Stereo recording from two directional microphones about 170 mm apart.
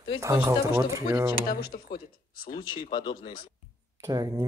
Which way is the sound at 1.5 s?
60° left (ahead or behind).